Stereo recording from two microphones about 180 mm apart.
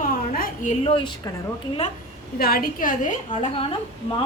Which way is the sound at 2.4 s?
55° left (ahead or behind).